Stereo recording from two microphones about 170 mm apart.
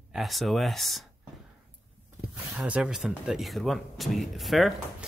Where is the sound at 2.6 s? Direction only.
5° right (ahead or behind).